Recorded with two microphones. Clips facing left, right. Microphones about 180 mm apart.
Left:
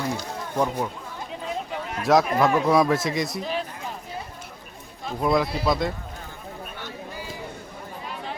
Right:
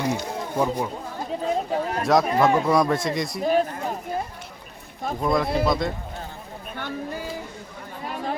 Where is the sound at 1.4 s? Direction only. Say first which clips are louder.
Right 7 dB; 40° right (ahead or behind).